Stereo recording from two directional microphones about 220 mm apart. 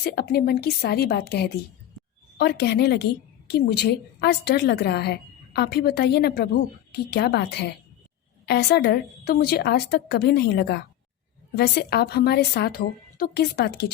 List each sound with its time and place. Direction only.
0.0 s a woman's voice: 45° left (ahead or behind)